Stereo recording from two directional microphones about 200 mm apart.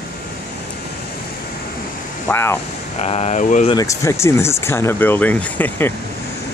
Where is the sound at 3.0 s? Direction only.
35° left (ahead or behind).